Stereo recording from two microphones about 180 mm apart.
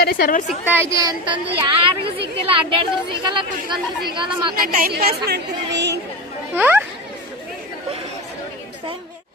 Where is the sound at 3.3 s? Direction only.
25° right (ahead or behind).